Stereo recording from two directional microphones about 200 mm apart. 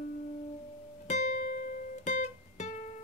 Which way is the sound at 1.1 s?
35° left (ahead or behind).